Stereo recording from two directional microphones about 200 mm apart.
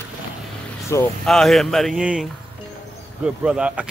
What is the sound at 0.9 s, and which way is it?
Speech, 15° left (ahead or behind).